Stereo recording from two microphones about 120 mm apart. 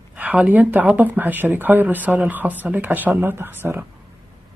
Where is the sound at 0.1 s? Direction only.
10° right (ahead or behind).